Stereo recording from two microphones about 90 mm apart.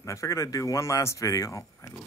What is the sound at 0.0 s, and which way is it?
Speech, 35° left (ahead or behind).